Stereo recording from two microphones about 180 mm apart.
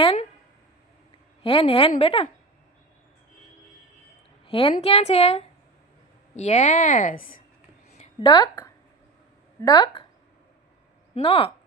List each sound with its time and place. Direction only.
0.0 s a sound: 30° left (ahead or behind)
1.4 s a woman's voice: 30° left (ahead or behind)
4.4 s a woman's voice: 30° left (ahead or behind); by 7.4 s 50° left (ahead or behind)
7.9 s a woman's voice: 25° left (ahead or behind)
11.1 s speech: 35° left (ahead or behind)